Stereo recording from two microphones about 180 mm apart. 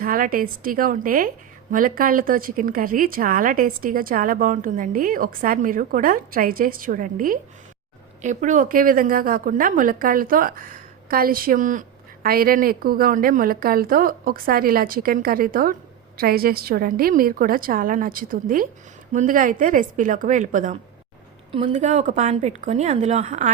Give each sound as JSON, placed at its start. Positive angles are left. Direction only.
{"t": 0.0, "sound": "a woman's voice", "side_deg": -50}